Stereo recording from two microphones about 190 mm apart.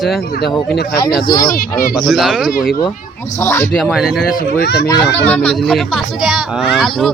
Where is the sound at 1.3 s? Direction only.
50° left (ahead or behind).